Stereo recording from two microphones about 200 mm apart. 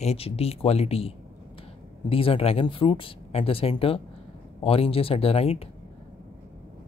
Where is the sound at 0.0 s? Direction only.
30° left (ahead or behind).